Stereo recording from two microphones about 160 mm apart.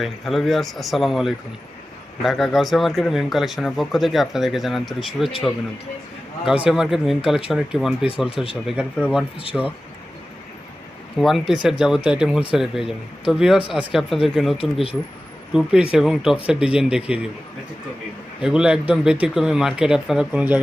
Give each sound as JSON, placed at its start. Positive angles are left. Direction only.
{"t": 0.0, "sound": "speech", "side_deg": 0}
{"t": 6.4, "sound": "speech", "side_deg": -5}
{"t": 11.2, "sound": "speech", "side_deg": 0}
{"t": 14.6, "sound": "speech", "side_deg": 35}
{"t": 15.5, "sound": "speech", "side_deg": -5}
{"t": 18.4, "sound": "speech", "side_deg": -5}